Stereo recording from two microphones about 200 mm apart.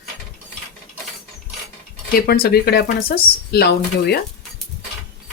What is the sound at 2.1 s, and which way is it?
Speech, 50° left (ahead or behind).